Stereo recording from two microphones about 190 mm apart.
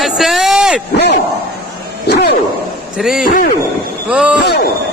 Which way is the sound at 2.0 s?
60° left (ahead or behind).